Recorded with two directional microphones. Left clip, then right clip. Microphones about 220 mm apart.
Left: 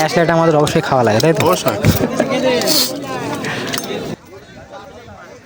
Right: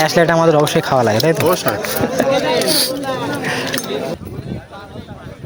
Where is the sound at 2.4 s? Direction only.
45° left (ahead or behind).